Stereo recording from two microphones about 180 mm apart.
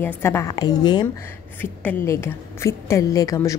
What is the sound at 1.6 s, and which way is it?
A woman's voice, 10° left (ahead or behind).